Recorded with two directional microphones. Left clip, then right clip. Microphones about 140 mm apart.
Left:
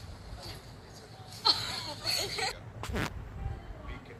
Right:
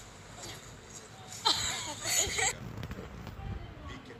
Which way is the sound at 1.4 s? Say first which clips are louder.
Left 1 dB; 10° left (ahead or behind).